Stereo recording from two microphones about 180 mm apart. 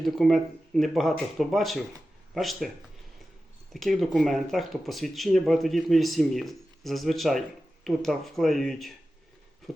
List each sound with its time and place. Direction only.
0.0 s speech: centre (ahead or behind)
3.7 s speech: centre (ahead or behind)
9.7 s a sound: centre (ahead or behind)